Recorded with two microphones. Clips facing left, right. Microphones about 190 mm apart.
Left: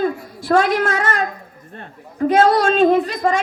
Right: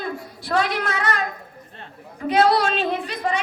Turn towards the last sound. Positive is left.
turn(degrees=45)  # may be behind; listen again after turning